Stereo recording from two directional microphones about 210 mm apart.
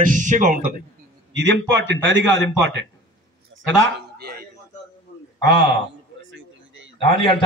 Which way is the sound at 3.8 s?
45° right (ahead or behind).